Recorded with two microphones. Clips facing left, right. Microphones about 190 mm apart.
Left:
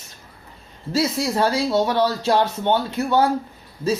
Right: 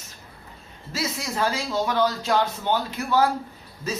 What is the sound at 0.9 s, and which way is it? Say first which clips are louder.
Speech: left 8 dB; 30° left (ahead or behind).